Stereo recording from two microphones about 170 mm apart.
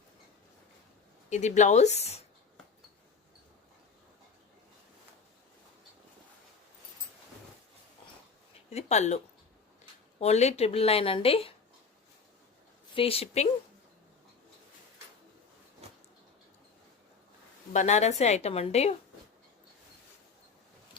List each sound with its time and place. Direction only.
1.3 s speech: 45° left (ahead or behind)
8.7 s speech: 40° left (ahead or behind)
12.9 s speech: 35° left (ahead or behind)
17.7 s speech: 40° left (ahead or behind)